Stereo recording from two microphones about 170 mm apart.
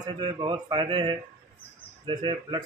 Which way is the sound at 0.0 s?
25° right (ahead or behind).